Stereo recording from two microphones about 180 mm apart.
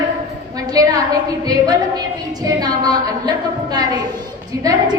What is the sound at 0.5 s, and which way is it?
A woman's voice, 20° right (ahead or behind).